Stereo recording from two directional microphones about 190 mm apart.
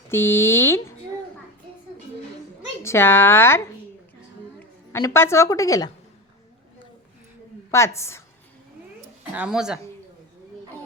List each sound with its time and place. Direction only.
0.1 s a woman's voice: 10° left (ahead or behind)
2.8 s a woman's voice: 15° left (ahead or behind)
4.9 s a woman's voice: 15° left (ahead or behind)
7.7 s a woman's voice: 15° left (ahead or behind)
9.3 s speech: 5° right (ahead or behind)